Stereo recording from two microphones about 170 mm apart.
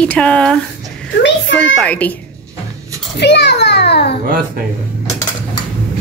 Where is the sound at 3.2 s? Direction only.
90° left.